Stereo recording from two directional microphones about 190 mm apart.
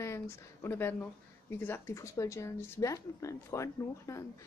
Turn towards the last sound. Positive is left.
turn(degrees=15)  # may be behind; listen again after turning